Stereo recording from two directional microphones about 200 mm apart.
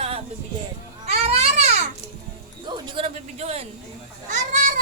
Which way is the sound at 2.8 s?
25° right (ahead or behind).